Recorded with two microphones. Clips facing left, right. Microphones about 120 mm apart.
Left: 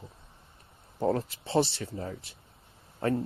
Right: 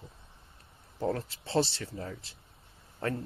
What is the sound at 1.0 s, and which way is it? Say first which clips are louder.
Speech: left 4 dB; 25° left (ahead or behind).